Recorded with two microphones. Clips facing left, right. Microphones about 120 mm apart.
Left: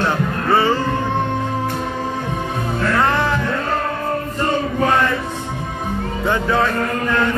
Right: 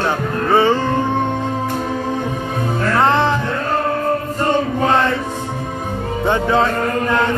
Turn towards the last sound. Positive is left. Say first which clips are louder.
# right 2 dB
turn(degrees=-20)  # may be behind; listen again after turning